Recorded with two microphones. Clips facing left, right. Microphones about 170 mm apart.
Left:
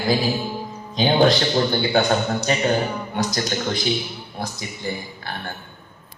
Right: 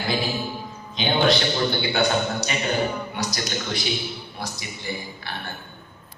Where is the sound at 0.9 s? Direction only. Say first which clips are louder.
Left 4 dB; 40° left (ahead or behind).